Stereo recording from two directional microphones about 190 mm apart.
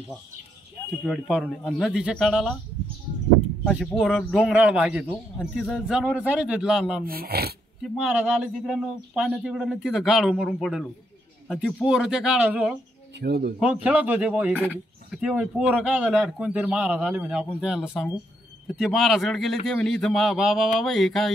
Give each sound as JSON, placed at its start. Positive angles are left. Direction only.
{"t": 1.0, "sound": "speech", "side_deg": 0}
{"t": 3.6, "sound": "speech", "side_deg": 0}
{"t": 7.1, "sound": "speech", "side_deg": -55}
{"t": 7.8, "sound": "speech", "side_deg": -5}
{"t": 13.2, "sound": "speech", "side_deg": -60}
{"t": 13.8, "sound": "speech", "side_deg": -10}